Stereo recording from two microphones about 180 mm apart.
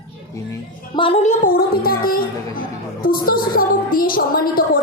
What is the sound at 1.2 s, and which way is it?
A woman's voice, 45° left (ahead or behind).